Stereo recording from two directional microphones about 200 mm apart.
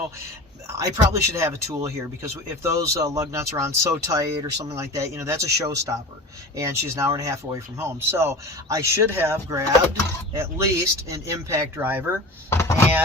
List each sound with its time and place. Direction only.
0.7 s a man's voice: 15° right (ahead or behind)
12.5 s speech: 15° left (ahead or behind)